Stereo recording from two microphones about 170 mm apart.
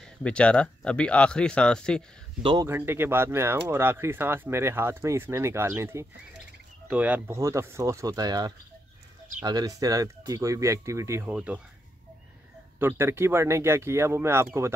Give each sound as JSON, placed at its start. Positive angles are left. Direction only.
{"t": 0.0, "sound": "speech", "side_deg": 5}
{"t": 2.4, "sound": "speech", "side_deg": -25}
{"t": 2.7, "sound": "speech", "side_deg": -15}
{"t": 11.2, "sound": "speech", "side_deg": -5}
{"t": 12.7, "sound": "speech", "side_deg": -15}